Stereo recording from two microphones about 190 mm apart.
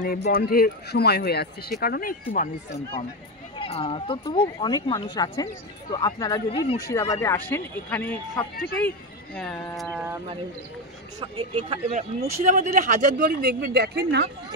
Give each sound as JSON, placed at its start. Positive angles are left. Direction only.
{"t": 0.0, "sound": "speech", "side_deg": 50}
{"t": 3.5, "sound": "speech", "side_deg": 30}
{"t": 11.1, "sound": "speech", "side_deg": -25}
{"t": 12.4, "sound": "speech", "side_deg": -40}